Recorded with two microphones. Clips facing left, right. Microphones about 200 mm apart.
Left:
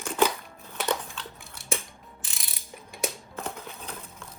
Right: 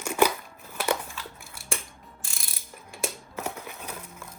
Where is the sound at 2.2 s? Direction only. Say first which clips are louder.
Even; centre (ahead or behind).